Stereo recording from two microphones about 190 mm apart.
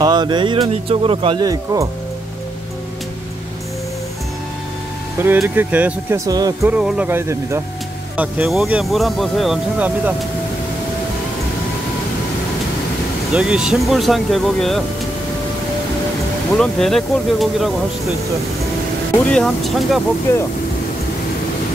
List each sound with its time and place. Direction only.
0.0 s speech: 20° right (ahead or behind)
5.2 s speech: 10° right (ahead or behind)
6.7 s speech: 5° right (ahead or behind)
13.3 s speech: 5° right (ahead or behind)
16.5 s speech: centre (ahead or behind)
19.3 s speech: centre (ahead or behind)
20.3 s speech: 10° left (ahead or behind)